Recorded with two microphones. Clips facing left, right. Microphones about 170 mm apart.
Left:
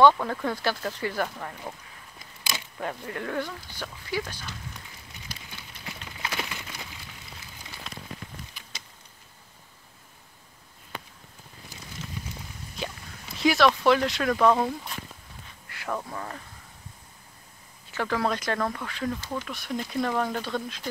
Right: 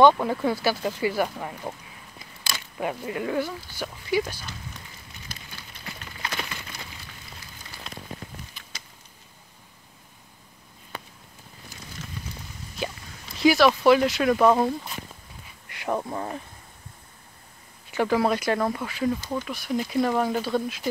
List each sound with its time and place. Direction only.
0.0 s speech: 10° right (ahead or behind)
2.8 s speech: 10° right (ahead or behind)
5.3 s a sound: 10° left (ahead or behind)
13.4 s speech: centre (ahead or behind)
15.7 s speech: 20° right (ahead or behind)
17.9 s speech: 15° right (ahead or behind)